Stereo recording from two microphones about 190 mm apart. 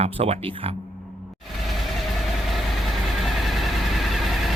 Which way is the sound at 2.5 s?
Centre (ahead or behind).